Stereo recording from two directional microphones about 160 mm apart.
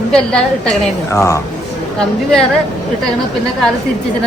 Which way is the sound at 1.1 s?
15° left (ahead or behind).